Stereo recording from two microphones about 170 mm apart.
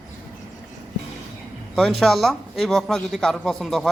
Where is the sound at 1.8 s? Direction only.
Centre (ahead or behind).